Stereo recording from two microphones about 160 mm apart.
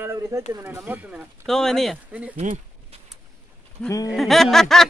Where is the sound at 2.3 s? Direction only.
45° right (ahead or behind).